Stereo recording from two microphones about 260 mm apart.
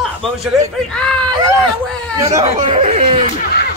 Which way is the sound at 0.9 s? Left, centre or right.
Centre.